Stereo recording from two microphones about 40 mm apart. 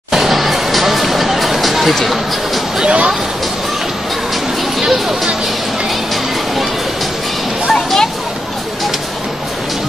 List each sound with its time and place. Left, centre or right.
0.1 s music: centre
2.8 s a sound: right
4.7 s music: centre
7.7 s music: centre